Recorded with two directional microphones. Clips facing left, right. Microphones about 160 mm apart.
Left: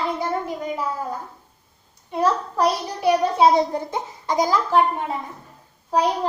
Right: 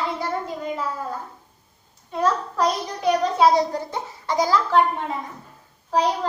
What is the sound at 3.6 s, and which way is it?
A child's voice, 20° left (ahead or behind).